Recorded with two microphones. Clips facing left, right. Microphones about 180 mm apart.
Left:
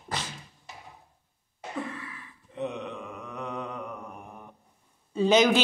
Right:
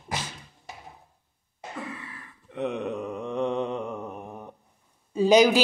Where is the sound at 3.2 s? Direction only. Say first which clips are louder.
Right 10 dB; 25° right (ahead or behind).